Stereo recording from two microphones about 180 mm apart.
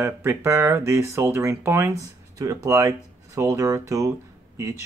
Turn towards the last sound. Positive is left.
turn(degrees=-15)  # may be behind; listen again after turning